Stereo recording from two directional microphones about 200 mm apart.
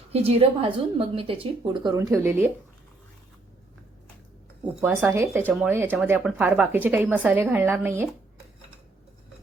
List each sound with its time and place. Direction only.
0.1 s speech: 30° right (ahead or behind); by 2.5 s 10° right (ahead or behind)
4.8 s speech: 10° right (ahead or behind)